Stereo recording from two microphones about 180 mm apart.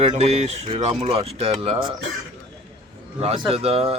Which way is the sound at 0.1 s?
35° right (ahead or behind).